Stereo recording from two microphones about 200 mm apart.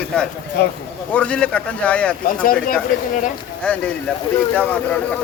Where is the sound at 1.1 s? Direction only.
5° left (ahead or behind).